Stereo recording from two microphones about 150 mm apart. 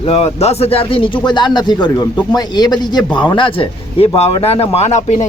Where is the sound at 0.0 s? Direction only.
45° left (ahead or behind).